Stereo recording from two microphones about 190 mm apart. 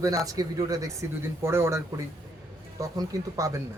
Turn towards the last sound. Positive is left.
turn(degrees=-15)  # may be behind; listen again after turning